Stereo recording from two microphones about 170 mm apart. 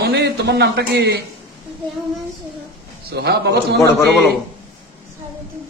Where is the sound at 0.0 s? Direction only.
85° right.